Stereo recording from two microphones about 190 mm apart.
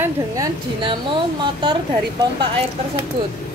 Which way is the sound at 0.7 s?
25° right (ahead or behind).